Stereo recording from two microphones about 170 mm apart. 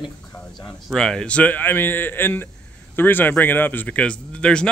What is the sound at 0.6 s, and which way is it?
Speech, 5° left (ahead or behind).